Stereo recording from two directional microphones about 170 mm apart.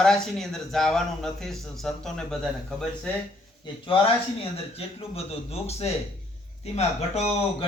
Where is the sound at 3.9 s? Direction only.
30° left (ahead or behind).